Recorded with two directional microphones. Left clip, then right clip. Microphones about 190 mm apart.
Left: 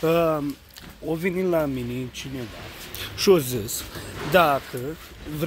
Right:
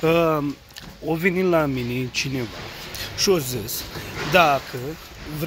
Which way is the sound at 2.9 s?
50° left (ahead or behind).